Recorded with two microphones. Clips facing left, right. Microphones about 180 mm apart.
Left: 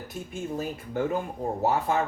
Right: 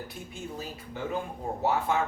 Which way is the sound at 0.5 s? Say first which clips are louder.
Left 12 dB; 50° left (ahead or behind).